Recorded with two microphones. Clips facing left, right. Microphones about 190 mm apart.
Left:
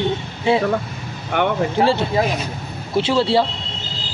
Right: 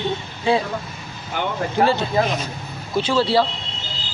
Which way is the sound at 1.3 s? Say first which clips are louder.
Left 6 dB; 60° left (ahead or behind).